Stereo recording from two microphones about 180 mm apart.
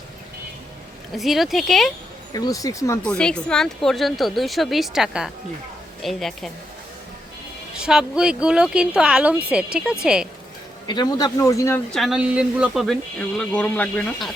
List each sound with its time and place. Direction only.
1.1 s speech: centre (ahead or behind)
2.3 s a man's voice: 20° left (ahead or behind)
3.0 s speech: 5° left (ahead or behind)
7.8 s speech: 5° right (ahead or behind)
10.8 s a man's voice: 25° left (ahead or behind)
11.9 s speech: centre (ahead or behind)